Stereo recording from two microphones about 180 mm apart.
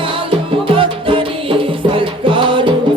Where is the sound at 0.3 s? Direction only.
30° right (ahead or behind).